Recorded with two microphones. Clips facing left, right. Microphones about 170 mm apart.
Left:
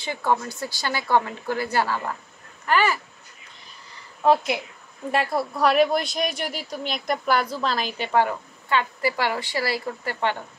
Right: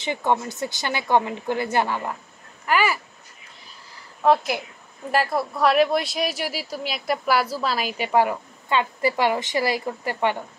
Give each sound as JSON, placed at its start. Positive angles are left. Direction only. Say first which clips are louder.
{"t": 0.0, "sound": "a woman's voice", "louder": "right 1 dB", "side_deg": -20}
{"t": 4.2, "sound": "speech", "louder": "even", "side_deg": 0}